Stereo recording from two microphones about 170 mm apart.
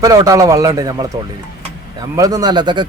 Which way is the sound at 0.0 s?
20° right (ahead or behind).